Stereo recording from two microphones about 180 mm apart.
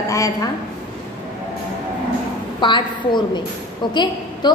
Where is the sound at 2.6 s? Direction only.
25° left (ahead or behind).